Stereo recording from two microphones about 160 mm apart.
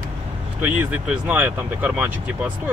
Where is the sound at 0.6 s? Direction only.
10° right (ahead or behind).